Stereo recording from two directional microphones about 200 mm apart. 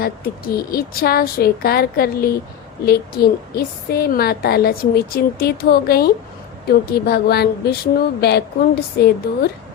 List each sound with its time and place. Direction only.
0.0 s a woman's voice: 50° left (ahead or behind)